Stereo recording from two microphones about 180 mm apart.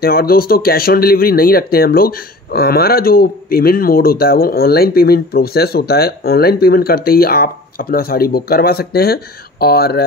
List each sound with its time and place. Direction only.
0.0 s speech: 55° left (ahead or behind)